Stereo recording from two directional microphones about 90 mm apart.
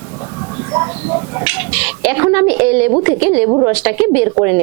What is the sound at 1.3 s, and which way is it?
Speech, 20° right (ahead or behind).